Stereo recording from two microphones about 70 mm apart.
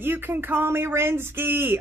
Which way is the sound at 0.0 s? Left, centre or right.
Right.